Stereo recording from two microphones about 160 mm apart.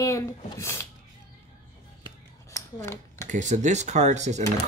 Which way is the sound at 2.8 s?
15° left (ahead or behind).